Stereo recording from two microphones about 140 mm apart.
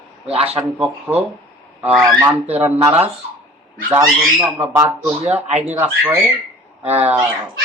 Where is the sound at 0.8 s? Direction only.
10° right (ahead or behind).